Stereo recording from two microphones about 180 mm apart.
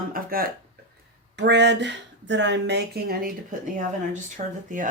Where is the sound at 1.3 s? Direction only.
70° right (ahead or behind); by 3.5 s 55° right (ahead or behind).